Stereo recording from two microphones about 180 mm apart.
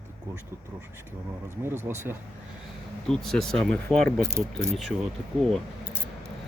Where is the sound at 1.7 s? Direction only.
15° right (ahead or behind).